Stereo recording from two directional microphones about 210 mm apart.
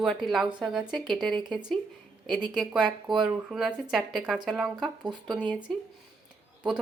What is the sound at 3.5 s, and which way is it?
Speech, centre (ahead or behind).